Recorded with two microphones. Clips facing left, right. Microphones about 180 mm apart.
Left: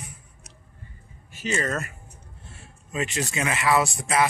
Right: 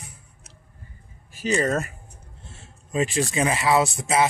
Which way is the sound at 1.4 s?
35° right (ahead or behind).